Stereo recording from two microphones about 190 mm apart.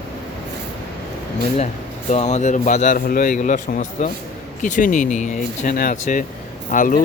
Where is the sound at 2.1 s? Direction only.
35° left (ahead or behind).